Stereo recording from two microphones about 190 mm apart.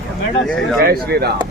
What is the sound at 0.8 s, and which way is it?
Speech, 55° right (ahead or behind).